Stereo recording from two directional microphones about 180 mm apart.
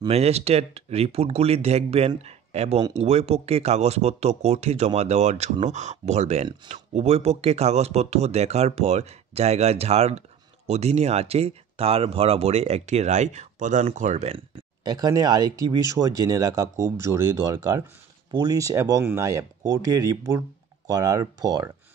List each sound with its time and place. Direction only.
0.1 s speech: 35° right (ahead or behind)
14.9 s speech: 20° right (ahead or behind)